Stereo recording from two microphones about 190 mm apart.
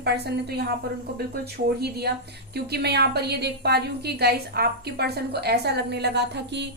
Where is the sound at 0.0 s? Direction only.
60° right (ahead or behind).